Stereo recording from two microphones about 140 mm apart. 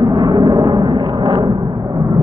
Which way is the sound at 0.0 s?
30° right (ahead or behind).